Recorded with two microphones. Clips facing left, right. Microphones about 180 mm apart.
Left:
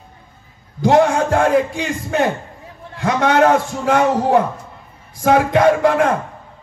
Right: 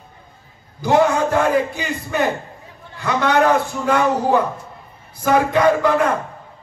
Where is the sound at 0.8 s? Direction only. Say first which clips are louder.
Left 2 dB; 75° left (ahead or behind).